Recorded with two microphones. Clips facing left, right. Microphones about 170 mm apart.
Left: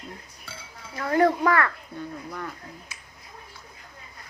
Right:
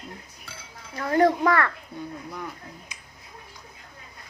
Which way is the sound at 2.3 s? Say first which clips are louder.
Left 1 dB; 10° right (ahead or behind).